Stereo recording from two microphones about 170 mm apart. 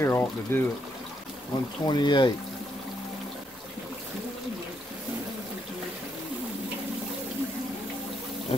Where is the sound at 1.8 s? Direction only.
25° left (ahead or behind).